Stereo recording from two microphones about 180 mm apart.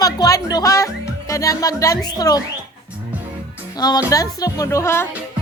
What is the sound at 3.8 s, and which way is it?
Speech, 20° left (ahead or behind).